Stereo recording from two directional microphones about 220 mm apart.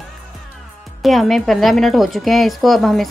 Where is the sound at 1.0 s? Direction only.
Centre (ahead or behind).